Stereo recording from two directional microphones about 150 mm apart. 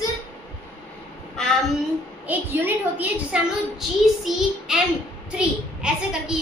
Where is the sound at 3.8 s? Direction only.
Centre (ahead or behind).